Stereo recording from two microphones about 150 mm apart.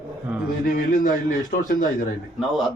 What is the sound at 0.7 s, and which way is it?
A man's voice, 70° left (ahead or behind).